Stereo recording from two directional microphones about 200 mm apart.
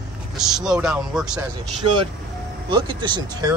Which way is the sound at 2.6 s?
25° right (ahead or behind).